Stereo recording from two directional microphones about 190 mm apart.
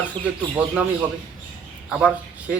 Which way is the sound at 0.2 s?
30° right (ahead or behind).